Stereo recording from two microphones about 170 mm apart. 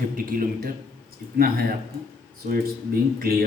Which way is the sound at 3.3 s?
60° right (ahead or behind).